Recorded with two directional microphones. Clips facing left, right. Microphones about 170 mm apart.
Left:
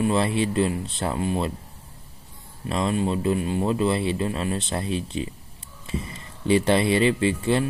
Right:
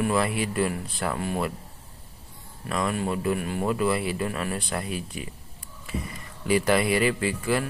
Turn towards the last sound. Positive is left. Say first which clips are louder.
# left 4 dB
turn(degrees=25)  # may be behind; listen again after turning